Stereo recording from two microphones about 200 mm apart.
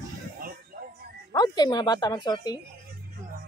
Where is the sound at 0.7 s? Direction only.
45° right (ahead or behind).